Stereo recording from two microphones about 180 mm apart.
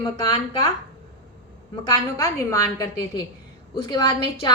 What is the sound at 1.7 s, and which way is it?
A woman's voice, 20° left (ahead or behind).